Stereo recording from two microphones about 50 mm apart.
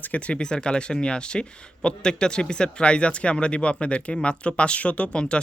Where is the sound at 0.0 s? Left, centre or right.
Left.